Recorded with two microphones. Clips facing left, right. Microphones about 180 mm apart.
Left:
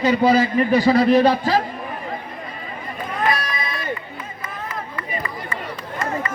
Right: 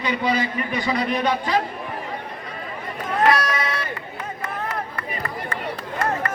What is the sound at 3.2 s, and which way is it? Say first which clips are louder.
Run: right 4 dB; 80° right.